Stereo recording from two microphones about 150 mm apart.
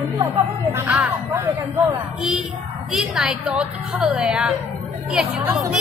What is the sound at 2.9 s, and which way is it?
A woman's voice, centre (ahead or behind).